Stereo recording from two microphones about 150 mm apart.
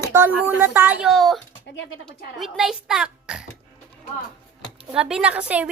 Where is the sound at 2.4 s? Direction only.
Centre (ahead or behind).